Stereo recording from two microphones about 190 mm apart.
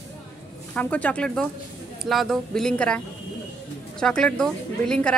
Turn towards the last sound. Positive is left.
turn(degrees=5)  # may be behind; listen again after turning